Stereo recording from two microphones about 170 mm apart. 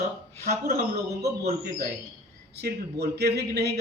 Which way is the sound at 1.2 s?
65° right (ahead or behind).